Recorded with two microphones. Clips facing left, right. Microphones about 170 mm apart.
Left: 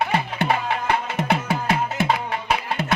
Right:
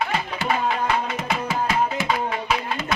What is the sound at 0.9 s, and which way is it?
Music, 60° left (ahead or behind).